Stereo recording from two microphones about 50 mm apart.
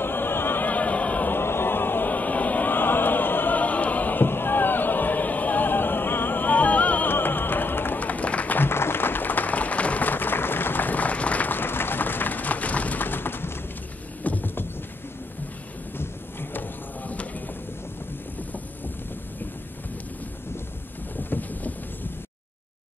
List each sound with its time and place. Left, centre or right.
0.0 s opera: left
0.7 s a sound: left
1.3 s music: left
7.1 s music: left
8.5 s applause: left
11.5 s run: left
14.2 s a sound: left
16.0 s a sound: left
21.2 s vehicle: left